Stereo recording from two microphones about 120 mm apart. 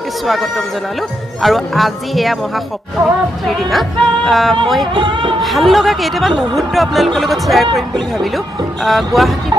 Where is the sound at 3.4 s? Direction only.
Centre (ahead or behind).